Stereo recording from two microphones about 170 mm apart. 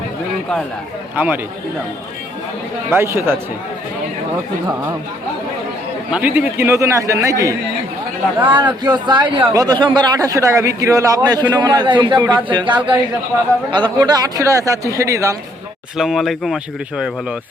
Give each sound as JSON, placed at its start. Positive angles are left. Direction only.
{"t": 1.1, "sound": "speech", "side_deg": -10}
{"t": 2.9, "sound": "speech", "side_deg": -15}
{"t": 6.1, "sound": "a man's voice", "side_deg": -10}
{"t": 16.0, "sound": "speech", "side_deg": 0}